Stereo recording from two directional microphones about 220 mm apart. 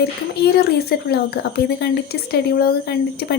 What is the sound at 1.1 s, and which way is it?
Speech, 45° left (ahead or behind).